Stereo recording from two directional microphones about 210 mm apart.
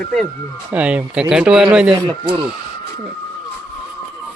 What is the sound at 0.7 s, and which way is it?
Speech, 5° right (ahead or behind).